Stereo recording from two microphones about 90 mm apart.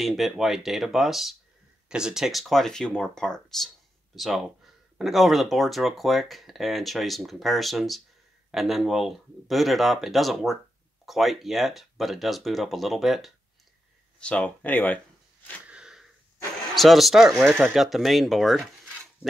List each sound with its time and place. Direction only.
0.0 s speech: centre (ahead or behind)
14.2 s speech: 15° left (ahead or behind)
15.6 s wheeze: 10° right (ahead or behind)
16.7 s speech: centre (ahead or behind)